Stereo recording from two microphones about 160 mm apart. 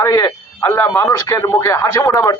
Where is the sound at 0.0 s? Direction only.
20° left (ahead or behind).